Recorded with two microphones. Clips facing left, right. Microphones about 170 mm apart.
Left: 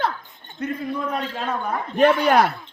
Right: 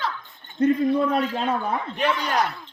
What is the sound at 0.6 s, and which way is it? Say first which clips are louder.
Speech: right 7 dB; 30° right (ahead or behind).